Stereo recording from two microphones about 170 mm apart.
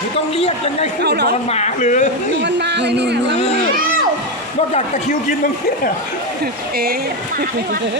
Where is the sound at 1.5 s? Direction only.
40° left (ahead or behind).